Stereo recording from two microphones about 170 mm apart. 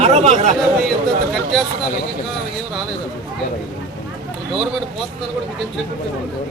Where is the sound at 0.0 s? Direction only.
40° right (ahead or behind).